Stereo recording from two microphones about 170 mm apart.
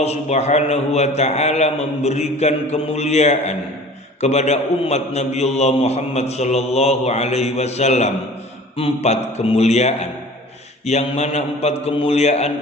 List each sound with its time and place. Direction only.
0.0 s a man's voice: 40° left (ahead or behind)